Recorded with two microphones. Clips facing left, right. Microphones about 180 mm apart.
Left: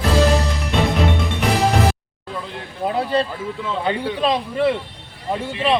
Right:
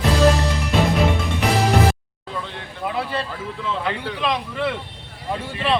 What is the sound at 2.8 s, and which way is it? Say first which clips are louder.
Speech: left 6 dB; 35° left (ahead or behind).